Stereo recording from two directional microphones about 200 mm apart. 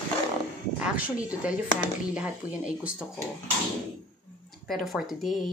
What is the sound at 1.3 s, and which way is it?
Speech, 5° right (ahead or behind).